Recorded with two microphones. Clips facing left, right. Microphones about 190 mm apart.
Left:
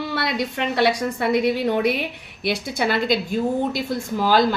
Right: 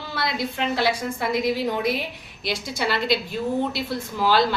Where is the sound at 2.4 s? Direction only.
55° left (ahead or behind).